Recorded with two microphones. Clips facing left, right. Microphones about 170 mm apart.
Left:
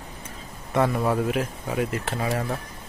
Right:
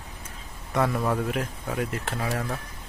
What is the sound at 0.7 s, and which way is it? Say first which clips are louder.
Speech: left 3 dB; 5° left (ahead or behind).